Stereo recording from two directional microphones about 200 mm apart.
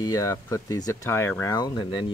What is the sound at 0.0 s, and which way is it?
Speech, 15° left (ahead or behind).